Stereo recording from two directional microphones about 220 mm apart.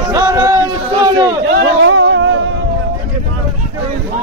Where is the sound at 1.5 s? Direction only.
65° right (ahead or behind).